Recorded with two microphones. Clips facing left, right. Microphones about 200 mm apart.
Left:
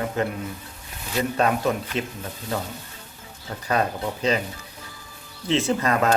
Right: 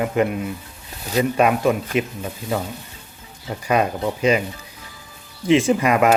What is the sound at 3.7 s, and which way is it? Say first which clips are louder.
Speech: right 4 dB; 10° right (ahead or behind).